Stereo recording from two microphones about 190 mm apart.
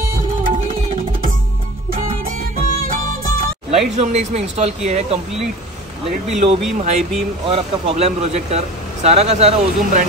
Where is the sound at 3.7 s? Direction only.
35° right (ahead or behind).